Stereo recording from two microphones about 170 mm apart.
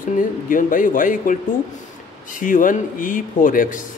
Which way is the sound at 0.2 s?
50° left (ahead or behind).